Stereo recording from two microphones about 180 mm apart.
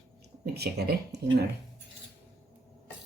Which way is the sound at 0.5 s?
65° right (ahead or behind).